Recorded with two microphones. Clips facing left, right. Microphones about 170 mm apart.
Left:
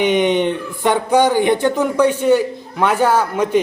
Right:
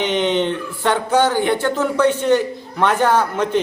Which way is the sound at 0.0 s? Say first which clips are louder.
Left 3 dB; 15° left (ahead or behind).